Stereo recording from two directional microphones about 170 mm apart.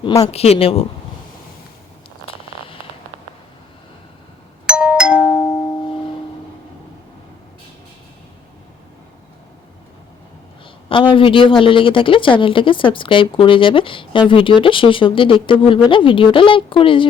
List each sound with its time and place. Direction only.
0.0 s speech: 20° left (ahead or behind)
0.3 s a woman's voice: 35° left (ahead or behind)
4.6 s doorbell: 5° right (ahead or behind)
10.8 s a woman's voice: 30° left (ahead or behind)